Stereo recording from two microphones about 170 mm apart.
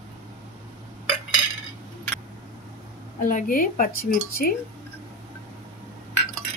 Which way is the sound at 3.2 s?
55° left (ahead or behind).